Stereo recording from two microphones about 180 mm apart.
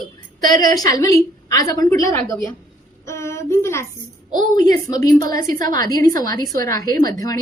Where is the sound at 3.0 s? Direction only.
15° left (ahead or behind).